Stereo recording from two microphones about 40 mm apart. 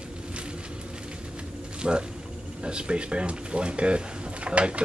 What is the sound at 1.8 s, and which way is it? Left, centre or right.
Speech, right.